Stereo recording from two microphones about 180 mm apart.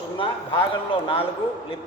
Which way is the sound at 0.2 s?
30° left (ahead or behind).